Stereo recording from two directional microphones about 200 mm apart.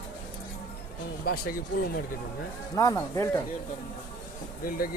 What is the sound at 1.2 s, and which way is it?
Speech, 45° left (ahead or behind).